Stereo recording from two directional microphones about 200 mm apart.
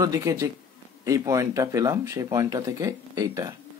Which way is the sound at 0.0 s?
15° right (ahead or behind).